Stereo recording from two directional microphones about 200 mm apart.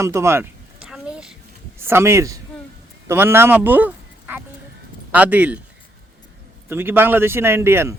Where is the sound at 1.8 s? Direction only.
10° right (ahead or behind).